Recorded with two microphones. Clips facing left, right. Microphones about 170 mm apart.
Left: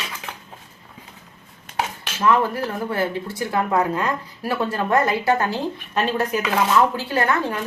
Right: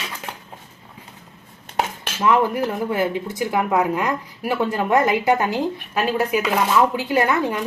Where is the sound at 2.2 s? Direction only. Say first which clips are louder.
Right 1 dB; 15° right (ahead or behind).